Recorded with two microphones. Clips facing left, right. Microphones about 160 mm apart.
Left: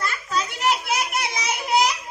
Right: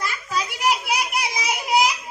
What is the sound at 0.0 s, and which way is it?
Children playing, 15° right (ahead or behind).